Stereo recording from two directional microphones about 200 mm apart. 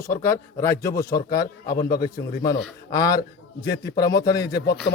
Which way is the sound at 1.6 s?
50° left (ahead or behind).